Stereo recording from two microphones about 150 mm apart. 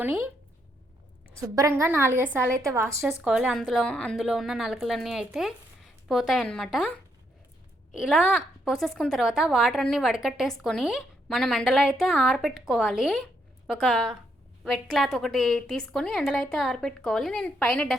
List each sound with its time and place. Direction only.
0.0 s a woman's voice: 15° right (ahead or behind)
1.4 s a woman's voice: 20° right (ahead or behind); by 6.9 s centre (ahead or behind)
7.9 s a woman's voice: 5° right (ahead or behind)